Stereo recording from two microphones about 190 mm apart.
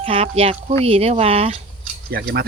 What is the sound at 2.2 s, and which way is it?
Speech, 60° right (ahead or behind).